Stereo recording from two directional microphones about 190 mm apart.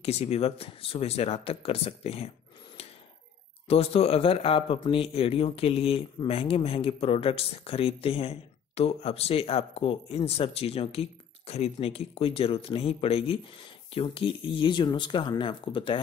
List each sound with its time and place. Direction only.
0.0 s speech: 35° left (ahead or behind)
3.6 s speech: 30° left (ahead or behind)